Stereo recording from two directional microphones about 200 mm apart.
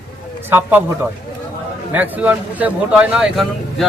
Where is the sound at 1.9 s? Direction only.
10° right (ahead or behind).